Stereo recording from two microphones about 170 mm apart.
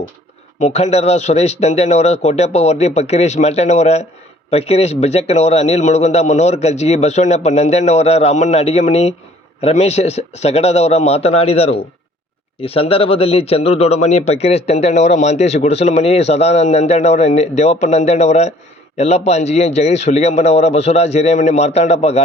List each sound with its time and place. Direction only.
0.6 s a man's voice: 40° left (ahead or behind)